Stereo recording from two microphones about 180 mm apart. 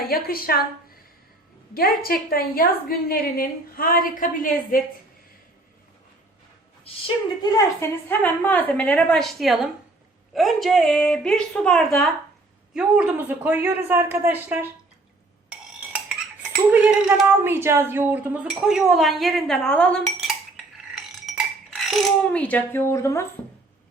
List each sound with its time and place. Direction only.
0.0 s a woman's voice: 55° left (ahead or behind)
1.7 s a woman's voice: 55° left (ahead or behind)
6.9 s a woman's voice: 30° left (ahead or behind)
7.4 s a woman's voice: 15° left (ahead or behind); by 14.7 s 10° right (ahead or behind)
15.4 s cutlery: 5° right (ahead or behind)
20.9 s a sound: 5° right (ahead or behind); by 23.2 s 15° left (ahead or behind)